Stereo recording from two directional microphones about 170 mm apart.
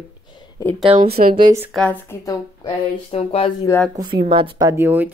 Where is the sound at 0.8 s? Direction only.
35° right (ahead or behind).